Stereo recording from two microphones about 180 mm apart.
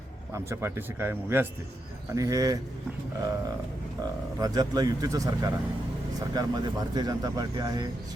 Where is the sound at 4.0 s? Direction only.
20° right (ahead or behind).